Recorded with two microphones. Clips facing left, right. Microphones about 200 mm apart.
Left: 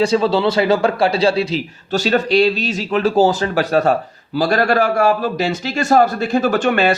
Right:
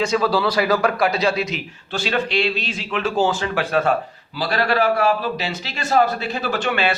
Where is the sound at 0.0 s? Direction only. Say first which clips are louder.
Left 4 dB; 30° left (ahead or behind).